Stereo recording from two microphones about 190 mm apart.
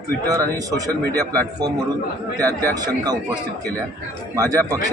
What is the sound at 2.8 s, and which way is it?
Speech, 20° right (ahead or behind).